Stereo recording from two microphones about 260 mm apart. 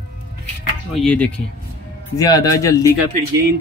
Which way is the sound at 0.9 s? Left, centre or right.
Centre.